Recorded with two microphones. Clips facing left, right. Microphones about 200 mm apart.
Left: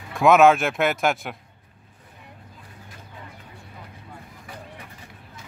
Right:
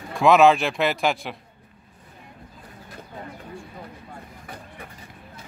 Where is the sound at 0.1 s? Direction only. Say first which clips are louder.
Even; centre (ahead or behind).